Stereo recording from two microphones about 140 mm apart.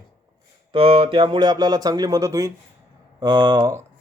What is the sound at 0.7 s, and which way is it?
Speech, 40° right (ahead or behind).